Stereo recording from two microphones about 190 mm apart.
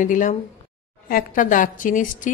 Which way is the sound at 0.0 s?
40° left (ahead or behind).